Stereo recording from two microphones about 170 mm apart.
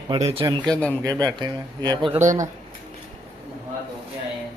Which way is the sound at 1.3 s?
25° right (ahead or behind).